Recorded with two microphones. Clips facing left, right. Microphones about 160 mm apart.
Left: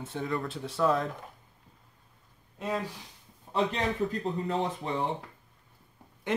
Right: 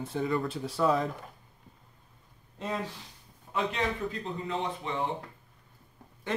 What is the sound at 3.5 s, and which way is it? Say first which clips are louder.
A man's voice: left 2 dB; 40° left (ahead or behind).